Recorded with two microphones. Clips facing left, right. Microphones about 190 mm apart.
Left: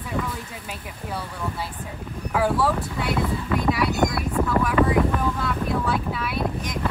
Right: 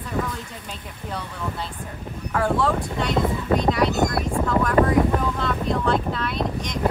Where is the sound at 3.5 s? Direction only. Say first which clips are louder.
Right 5 dB; 35° right (ahead or behind).